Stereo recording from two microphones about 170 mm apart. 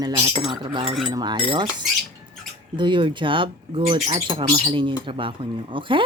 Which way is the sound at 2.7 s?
30° right (ahead or behind).